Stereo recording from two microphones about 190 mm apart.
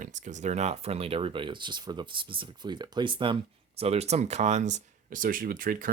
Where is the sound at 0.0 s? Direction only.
40° right (ahead or behind).